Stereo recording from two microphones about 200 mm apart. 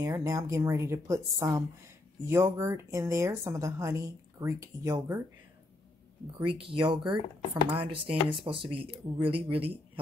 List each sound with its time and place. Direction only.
0.0 s a woman's voice: 15° right (ahead or behind)
6.4 s speech: 25° right (ahead or behind)